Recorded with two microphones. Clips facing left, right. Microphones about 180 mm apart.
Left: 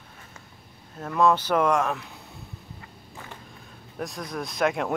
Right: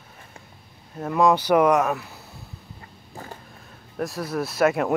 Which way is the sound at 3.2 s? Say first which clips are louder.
Right 5 dB; 40° right (ahead or behind).